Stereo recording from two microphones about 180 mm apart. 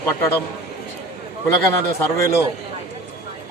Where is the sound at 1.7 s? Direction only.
15° left (ahead or behind).